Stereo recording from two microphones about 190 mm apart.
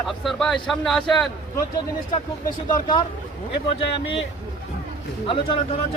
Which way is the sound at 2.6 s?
25° left (ahead or behind).